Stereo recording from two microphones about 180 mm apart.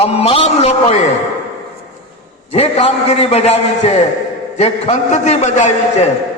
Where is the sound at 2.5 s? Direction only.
35° left (ahead or behind).